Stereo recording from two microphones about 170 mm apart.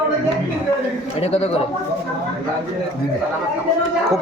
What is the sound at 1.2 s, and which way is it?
Speech, 35° left (ahead or behind).